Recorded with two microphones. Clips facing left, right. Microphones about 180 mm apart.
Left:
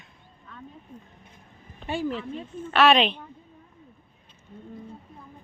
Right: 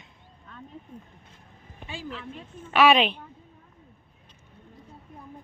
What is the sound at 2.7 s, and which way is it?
Speech, 10° right (ahead or behind).